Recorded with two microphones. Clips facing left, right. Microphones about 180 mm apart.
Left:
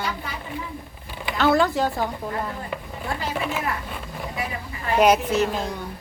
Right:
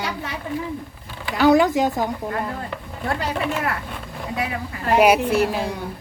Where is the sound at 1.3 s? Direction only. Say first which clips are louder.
Right 4 dB; 15° right (ahead or behind).